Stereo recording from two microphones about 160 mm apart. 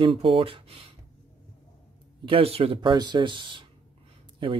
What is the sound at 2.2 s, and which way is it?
Speech, 35° right (ahead or behind).